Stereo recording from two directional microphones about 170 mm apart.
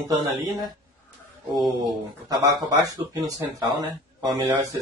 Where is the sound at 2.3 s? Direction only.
20° right (ahead or behind).